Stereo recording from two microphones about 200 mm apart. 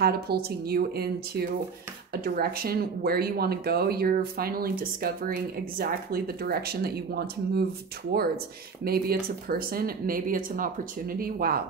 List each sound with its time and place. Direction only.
0.0 s speech: 50° right (ahead or behind)
8.8 s speech: 50° right (ahead or behind)